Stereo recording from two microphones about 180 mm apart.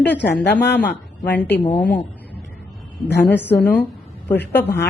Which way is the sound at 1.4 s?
10° left (ahead or behind).